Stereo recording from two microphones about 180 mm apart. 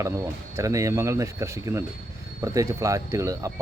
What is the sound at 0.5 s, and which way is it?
Speech, 15° right (ahead or behind).